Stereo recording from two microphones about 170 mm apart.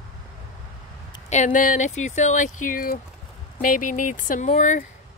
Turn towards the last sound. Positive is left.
turn(degrees=45)  # may be behind; listen again after turning